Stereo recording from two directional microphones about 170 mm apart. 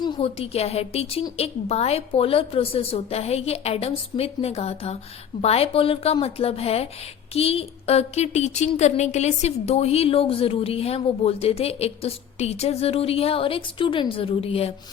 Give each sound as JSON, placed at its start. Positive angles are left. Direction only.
{"t": 0.0, "sound": "speech", "side_deg": 35}